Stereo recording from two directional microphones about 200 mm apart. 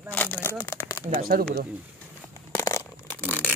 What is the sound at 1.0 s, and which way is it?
Speech, 45° right (ahead or behind).